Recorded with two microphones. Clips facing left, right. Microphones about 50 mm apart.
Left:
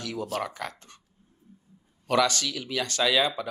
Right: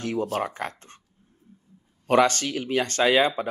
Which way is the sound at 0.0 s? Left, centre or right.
Right.